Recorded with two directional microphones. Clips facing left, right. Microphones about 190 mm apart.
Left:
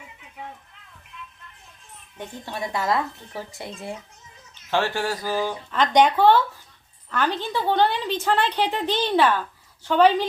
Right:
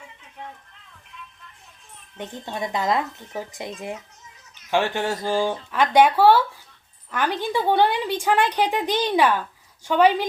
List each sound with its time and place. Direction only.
2.1 s speech: 20° right (ahead or behind)
5.7 s a woman's voice: 10° right (ahead or behind)